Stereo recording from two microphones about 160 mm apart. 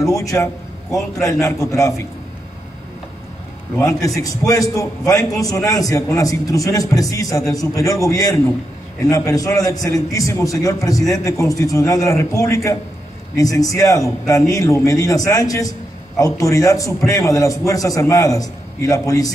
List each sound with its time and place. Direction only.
0.0 s a man's voice: 20° left (ahead or behind)
3.8 s a man's voice: 20° left (ahead or behind)